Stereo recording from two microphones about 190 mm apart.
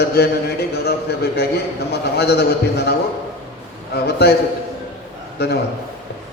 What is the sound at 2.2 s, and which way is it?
A man's voice, 60° left (ahead or behind).